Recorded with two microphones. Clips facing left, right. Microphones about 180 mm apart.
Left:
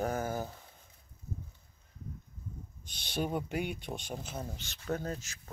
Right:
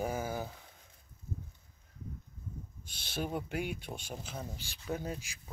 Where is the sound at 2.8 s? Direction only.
5° right (ahead or behind).